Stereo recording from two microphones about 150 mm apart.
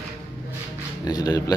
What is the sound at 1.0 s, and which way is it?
Speech, 25° left (ahead or behind).